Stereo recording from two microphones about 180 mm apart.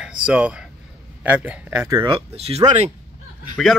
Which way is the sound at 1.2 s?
5° right (ahead or behind).